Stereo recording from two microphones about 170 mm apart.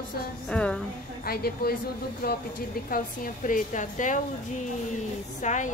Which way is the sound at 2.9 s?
50° left (ahead or behind).